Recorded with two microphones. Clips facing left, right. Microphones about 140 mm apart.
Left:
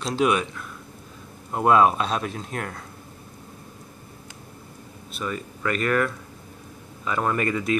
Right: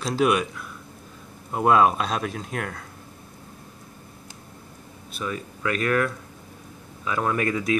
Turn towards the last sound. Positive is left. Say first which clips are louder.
# even
turn(degrees=0)  # may be behind; listen again after turning